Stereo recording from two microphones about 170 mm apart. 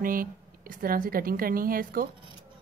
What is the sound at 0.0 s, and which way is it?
A woman's voice, 55° right (ahead or behind).